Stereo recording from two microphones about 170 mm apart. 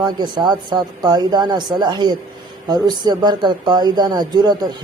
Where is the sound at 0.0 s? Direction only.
25° right (ahead or behind).